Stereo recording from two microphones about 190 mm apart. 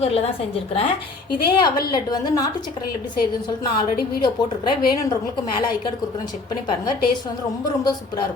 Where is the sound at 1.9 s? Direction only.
20° left (ahead or behind).